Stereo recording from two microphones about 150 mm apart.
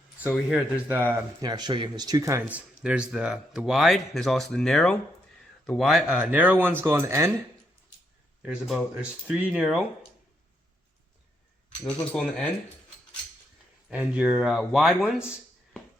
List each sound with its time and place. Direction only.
0.4 s speech: 10° right (ahead or behind)
1.4 s speech: 30° right (ahead or behind)
2.5 s speech: 10° right (ahead or behind)
8.4 s speech: 5° right (ahead or behind)
12.1 s speech: 5° left (ahead or behind)
13.9 s speech: 10° right (ahead or behind)